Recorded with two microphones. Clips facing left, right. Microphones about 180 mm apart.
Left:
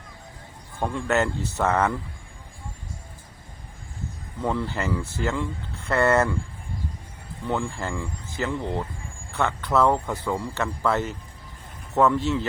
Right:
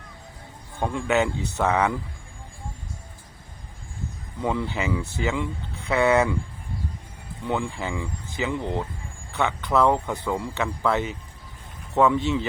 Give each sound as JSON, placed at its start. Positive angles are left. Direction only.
{"t": 0.8, "sound": "speech", "side_deg": -5}
{"t": 4.4, "sound": "speech", "side_deg": 0}
{"t": 7.4, "sound": "speech", "side_deg": 0}